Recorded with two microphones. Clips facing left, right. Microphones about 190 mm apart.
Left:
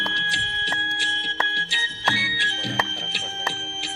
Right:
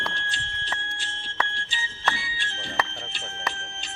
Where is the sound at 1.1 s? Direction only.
75° left (ahead or behind).